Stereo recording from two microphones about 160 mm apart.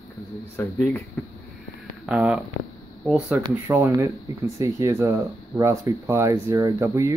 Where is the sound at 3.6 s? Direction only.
15° right (ahead or behind).